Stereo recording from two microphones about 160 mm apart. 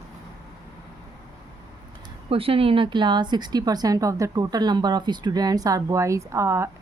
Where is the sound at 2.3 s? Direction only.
35° right (ahead or behind).